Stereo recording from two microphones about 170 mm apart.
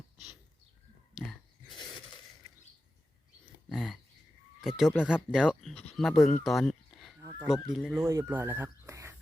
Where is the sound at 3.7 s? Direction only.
Centre (ahead or behind).